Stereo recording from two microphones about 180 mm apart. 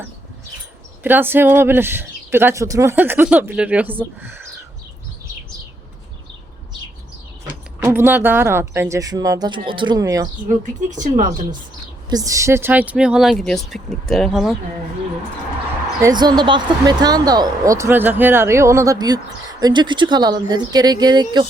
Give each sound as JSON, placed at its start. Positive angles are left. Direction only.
{"t": 1.0, "sound": "speech", "side_deg": -10}
{"t": 7.8, "sound": "speech", "side_deg": -15}
{"t": 10.5, "sound": "speech", "side_deg": -45}
{"t": 12.1, "sound": "speech", "side_deg": -20}
{"t": 16.0, "sound": "speech", "side_deg": -20}